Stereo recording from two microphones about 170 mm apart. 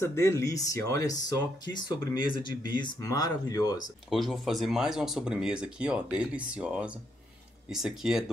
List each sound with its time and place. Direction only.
0.0 s speech: 15° left (ahead or behind)
4.1 s speech: centre (ahead or behind)